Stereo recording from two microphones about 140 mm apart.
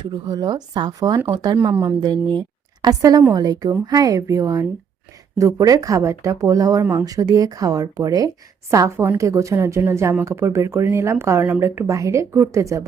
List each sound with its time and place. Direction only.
0.0 s a woman's voice: 30° right (ahead or behind)
2.0 s a woman's voice: 30° right (ahead or behind)